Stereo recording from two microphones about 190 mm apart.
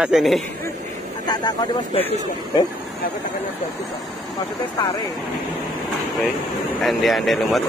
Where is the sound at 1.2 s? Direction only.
20° left (ahead or behind).